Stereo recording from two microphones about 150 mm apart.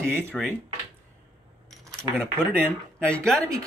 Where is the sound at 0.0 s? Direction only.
15° right (ahead or behind).